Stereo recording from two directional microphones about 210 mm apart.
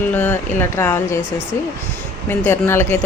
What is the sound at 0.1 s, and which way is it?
Speech, 10° left (ahead or behind).